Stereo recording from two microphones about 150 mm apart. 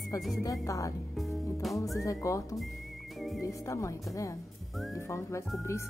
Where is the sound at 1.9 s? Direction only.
20° left (ahead or behind).